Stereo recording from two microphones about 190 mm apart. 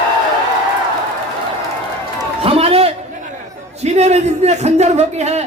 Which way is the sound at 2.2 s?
30° right (ahead or behind).